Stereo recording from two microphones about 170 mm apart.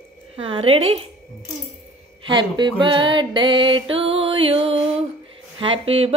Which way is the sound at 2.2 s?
25° right (ahead or behind).